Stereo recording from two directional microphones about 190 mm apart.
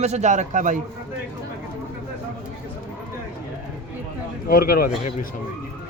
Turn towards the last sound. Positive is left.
turn(degrees=50)  # may be behind; listen again after turning